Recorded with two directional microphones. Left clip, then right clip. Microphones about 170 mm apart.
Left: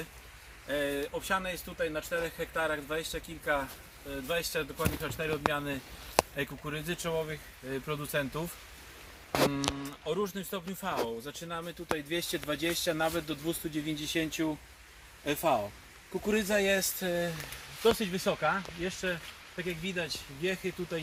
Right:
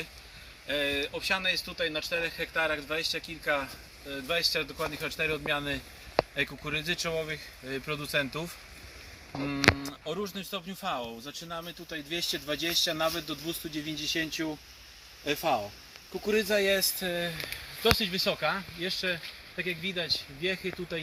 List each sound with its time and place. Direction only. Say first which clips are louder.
0.7 s speech: right 2 dB; 15° left (ahead or behind)
9.8 s speech: left 2 dB; 35° left (ahead or behind); by 14.0 s 60° left (ahead or behind)
14.4 s speech: left 1 dB; 45° left (ahead or behind)
16.2 s speech: right 2 dB; 60° left (ahead or behind)
18.0 s speech: right 2 dB; 20° left (ahead or behind)